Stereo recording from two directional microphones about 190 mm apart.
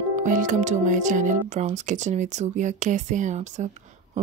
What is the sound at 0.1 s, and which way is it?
Speech, 40° right (ahead or behind).